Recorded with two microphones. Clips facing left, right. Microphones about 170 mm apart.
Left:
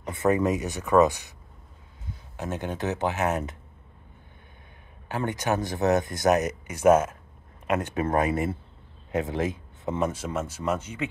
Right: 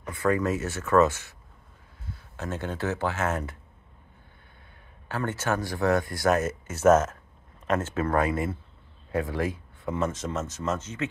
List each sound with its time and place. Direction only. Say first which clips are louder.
0.0 s speech: left 2 dB; 20° left (ahead or behind)
5.0 s speech: left 1 dB; 15° left (ahead or behind)